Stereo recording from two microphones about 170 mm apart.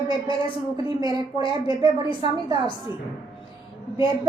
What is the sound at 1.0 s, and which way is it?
Speech, 25° right (ahead or behind).